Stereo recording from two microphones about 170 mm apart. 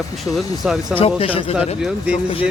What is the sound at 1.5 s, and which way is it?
Speech, 5° right (ahead or behind).